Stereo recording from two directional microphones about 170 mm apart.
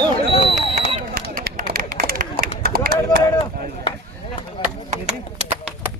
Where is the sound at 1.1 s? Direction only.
60° right (ahead or behind).